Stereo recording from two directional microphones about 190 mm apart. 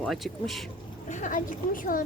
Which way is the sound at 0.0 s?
Centre (ahead or behind).